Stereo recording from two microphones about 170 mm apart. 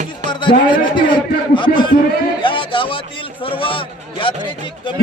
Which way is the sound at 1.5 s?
30° left (ahead or behind).